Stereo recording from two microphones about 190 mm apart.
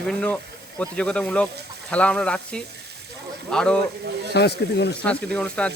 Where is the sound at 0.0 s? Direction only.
5° left (ahead or behind).